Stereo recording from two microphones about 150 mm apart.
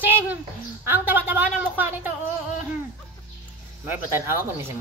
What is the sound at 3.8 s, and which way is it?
Speech, 15° right (ahead or behind).